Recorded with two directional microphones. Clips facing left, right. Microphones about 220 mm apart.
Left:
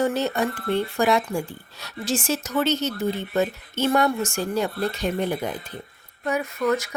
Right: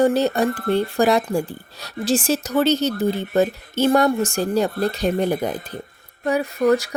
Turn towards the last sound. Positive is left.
turn(degrees=-35)  # may be behind; listen again after turning